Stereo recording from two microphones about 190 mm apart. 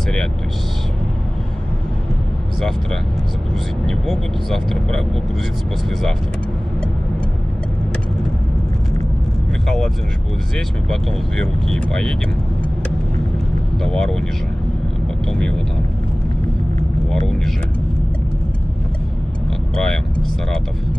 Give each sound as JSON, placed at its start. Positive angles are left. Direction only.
{"t": 3.8, "sound": "speech", "side_deg": 0}
{"t": 10.9, "sound": "speech", "side_deg": 5}
{"t": 13.8, "sound": "speech", "side_deg": 0}
{"t": 15.2, "sound": "speech", "side_deg": 5}
{"t": 19.7, "sound": "speech", "side_deg": 0}